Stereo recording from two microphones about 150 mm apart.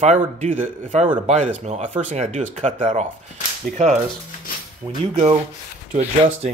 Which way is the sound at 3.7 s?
70° right (ahead or behind).